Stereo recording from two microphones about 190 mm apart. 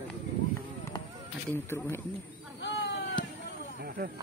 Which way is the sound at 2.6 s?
75° left (ahead or behind).